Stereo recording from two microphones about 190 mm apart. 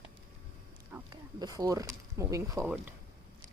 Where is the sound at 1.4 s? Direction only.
20° right (ahead or behind).